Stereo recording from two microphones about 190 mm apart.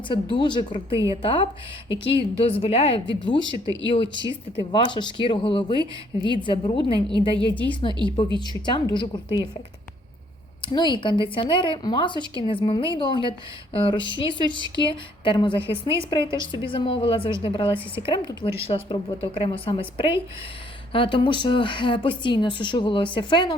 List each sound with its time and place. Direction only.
0.1 s a woman's voice: 25° left (ahead or behind)
4.7 s a woman's voice: 25° left (ahead or behind)
8.0 s a woman's voice: 30° left (ahead or behind)
10.7 s a woman's voice: 25° left (ahead or behind)
14.3 s speech: 25° right (ahead or behind)
14.8 s a woman's voice: 25° left (ahead or behind)